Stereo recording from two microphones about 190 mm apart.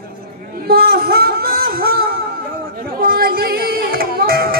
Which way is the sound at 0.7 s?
50° right (ahead or behind).